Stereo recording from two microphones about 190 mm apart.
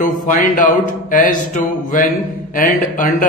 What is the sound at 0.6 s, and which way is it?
A man's voice, 45° left (ahead or behind).